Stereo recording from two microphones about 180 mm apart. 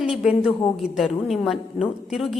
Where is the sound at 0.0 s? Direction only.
5° right (ahead or behind).